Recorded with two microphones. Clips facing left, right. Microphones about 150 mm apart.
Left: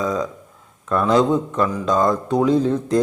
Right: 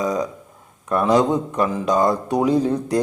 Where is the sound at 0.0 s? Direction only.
15° right (ahead or behind).